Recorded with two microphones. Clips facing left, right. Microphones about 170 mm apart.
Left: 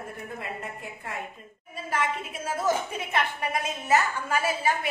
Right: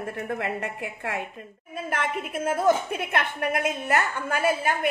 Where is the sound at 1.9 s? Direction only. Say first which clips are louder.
Even; 60° right (ahead or behind).